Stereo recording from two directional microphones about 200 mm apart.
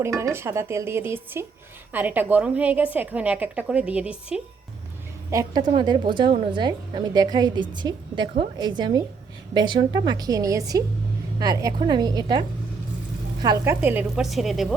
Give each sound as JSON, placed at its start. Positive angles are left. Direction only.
{"t": 0.0, "sound": "a woman's voice", "side_deg": -15}
{"t": 5.3, "sound": "a woman's voice", "side_deg": -20}
{"t": 13.8, "sound": "speech", "side_deg": -5}